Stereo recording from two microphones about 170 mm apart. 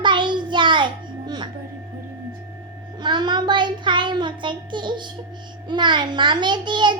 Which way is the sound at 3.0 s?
25° right (ahead or behind).